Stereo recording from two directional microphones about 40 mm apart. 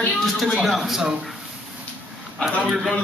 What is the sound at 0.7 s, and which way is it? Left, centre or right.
Speech, centre.